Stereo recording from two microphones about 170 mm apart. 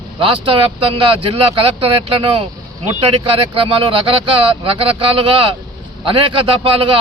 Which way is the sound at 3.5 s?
30° right (ahead or behind).